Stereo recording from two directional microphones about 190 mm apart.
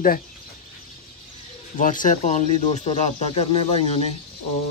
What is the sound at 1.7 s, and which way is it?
Speech, 45° left (ahead or behind).